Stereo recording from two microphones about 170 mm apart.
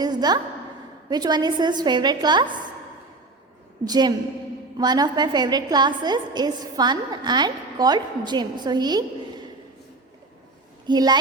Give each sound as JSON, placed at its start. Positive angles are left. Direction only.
{"t": 0.0, "sound": "a woman's voice", "side_deg": -25}
{"t": 3.8, "sound": "a woman's voice", "side_deg": -25}
{"t": 10.8, "sound": "a woman's voice", "side_deg": -25}